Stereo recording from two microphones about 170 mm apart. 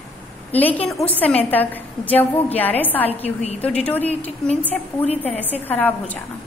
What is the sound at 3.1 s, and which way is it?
A woman's voice, 40° left (ahead or behind).